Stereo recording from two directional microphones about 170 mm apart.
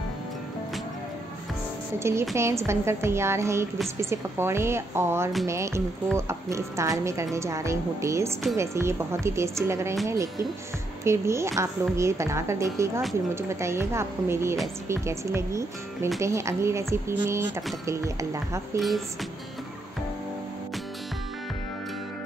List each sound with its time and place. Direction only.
2.0 s a woman's voice: 15° right (ahead or behind)
18.8 s speech: centre (ahead or behind)